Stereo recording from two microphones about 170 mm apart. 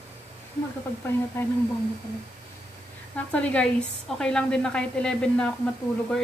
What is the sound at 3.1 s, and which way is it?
A woman's voice, 10° left (ahead or behind).